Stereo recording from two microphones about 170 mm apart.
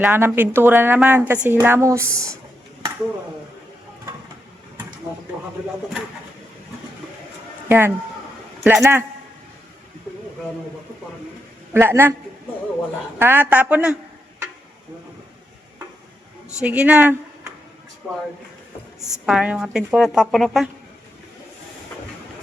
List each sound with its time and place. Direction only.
0.0 s a woman's voice: 10° right (ahead or behind)
7.7 s a woman's voice: 15° right (ahead or behind)
11.7 s a woman's voice: 15° right (ahead or behind)
13.1 s a woman's voice: 10° right (ahead or behind)
16.6 s a woman's voice: 5° right (ahead or behind)
18.9 s a woman's voice: centre (ahead or behind)